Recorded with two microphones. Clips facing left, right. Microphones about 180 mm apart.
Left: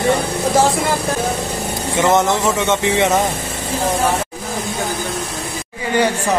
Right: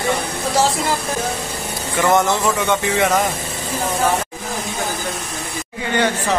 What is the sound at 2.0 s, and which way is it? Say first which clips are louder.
Speech: left 1 dB; 20° left (ahead or behind).